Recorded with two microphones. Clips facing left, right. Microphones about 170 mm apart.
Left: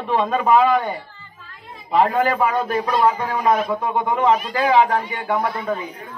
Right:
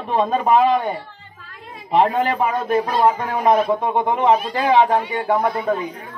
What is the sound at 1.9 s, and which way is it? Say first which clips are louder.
A man's voice: even; 25° right (ahead or behind).